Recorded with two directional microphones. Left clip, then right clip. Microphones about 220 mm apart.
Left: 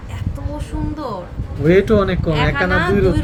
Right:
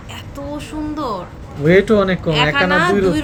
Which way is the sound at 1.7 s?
10° left (ahead or behind).